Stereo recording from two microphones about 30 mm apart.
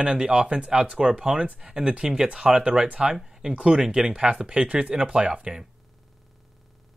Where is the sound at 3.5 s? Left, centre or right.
Right.